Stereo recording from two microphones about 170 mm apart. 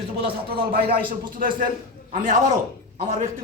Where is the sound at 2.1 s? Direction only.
55° right (ahead or behind).